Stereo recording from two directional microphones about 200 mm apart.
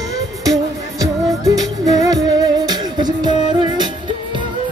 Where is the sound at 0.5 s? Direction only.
15° right (ahead or behind).